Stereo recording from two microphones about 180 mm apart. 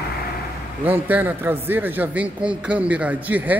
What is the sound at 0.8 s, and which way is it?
Speech, 10° right (ahead or behind).